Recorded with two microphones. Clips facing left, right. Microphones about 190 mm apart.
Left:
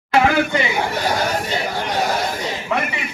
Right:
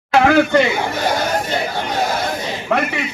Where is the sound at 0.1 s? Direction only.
60° right (ahead or behind).